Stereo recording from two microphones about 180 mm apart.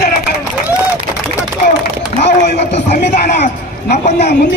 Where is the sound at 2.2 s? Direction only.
70° left (ahead or behind).